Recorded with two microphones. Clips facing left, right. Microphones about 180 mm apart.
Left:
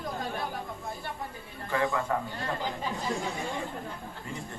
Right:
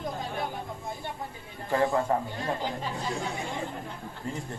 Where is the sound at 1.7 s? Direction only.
35° right (ahead or behind).